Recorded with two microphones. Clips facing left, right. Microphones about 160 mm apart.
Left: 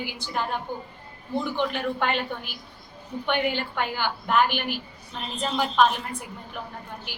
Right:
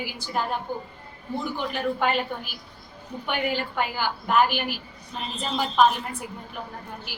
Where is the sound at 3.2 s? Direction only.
5° right (ahead or behind).